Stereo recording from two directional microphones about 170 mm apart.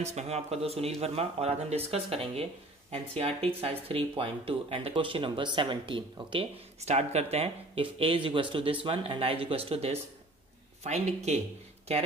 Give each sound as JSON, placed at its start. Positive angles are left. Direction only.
{"t": 0.0, "sound": "speech", "side_deg": -40}